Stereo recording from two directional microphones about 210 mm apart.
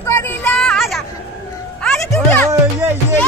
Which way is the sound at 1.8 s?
5° left (ahead or behind).